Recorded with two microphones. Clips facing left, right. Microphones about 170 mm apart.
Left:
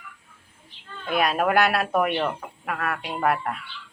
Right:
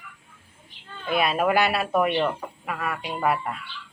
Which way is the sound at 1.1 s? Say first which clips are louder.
Even; centre (ahead or behind).